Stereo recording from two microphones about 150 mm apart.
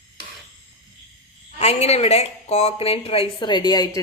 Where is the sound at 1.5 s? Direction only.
45° left (ahead or behind); by 4.0 s 25° left (ahead or behind).